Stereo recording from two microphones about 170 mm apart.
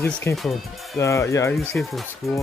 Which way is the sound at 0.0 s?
15° left (ahead or behind).